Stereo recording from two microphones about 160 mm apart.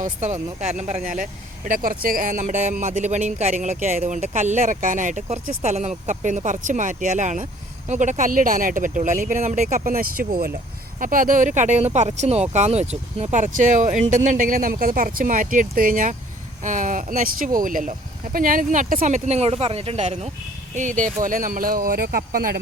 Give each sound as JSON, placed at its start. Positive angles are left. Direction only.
{"t": 0.0, "sound": "speech", "side_deg": -45}
{"t": 20.7, "sound": "speech", "side_deg": -50}